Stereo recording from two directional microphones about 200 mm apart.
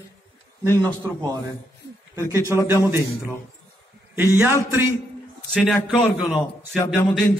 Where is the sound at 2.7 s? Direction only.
10° right (ahead or behind).